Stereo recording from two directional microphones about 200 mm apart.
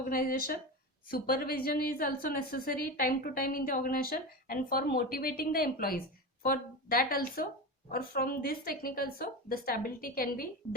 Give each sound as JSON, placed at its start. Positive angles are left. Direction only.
{"t": 0.1, "sound": "a woman's voice", "side_deg": 45}